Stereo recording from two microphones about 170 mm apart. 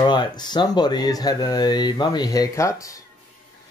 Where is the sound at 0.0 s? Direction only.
25° left (ahead or behind).